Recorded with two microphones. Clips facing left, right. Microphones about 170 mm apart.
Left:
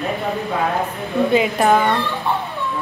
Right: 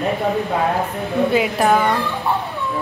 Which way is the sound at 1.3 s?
Centre (ahead or behind).